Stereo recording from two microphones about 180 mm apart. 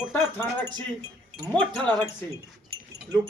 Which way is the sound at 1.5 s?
5° left (ahead or behind).